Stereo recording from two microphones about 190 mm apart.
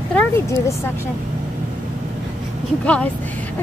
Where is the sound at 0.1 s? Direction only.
15° left (ahead or behind).